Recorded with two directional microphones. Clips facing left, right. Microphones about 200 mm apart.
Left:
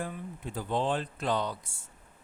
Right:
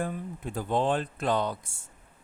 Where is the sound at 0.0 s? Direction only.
50° right (ahead or behind).